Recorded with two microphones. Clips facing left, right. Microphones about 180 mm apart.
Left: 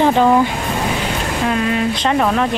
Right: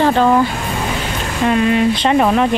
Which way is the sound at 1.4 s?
Centre (ahead or behind).